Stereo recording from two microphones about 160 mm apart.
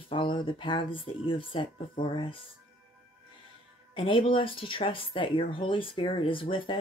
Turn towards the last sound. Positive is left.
turn(degrees=30)  # may be behind; listen again after turning